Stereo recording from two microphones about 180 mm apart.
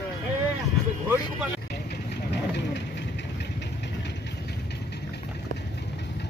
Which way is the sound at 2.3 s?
70° left (ahead or behind).